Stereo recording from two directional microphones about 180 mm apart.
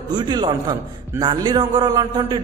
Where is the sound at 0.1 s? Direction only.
25° right (ahead or behind).